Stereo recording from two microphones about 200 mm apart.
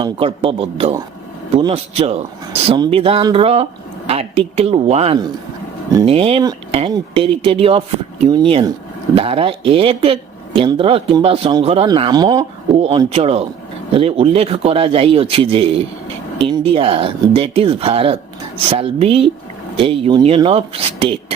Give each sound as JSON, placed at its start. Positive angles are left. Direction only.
{"t": 0.0, "sound": "speech", "side_deg": -25}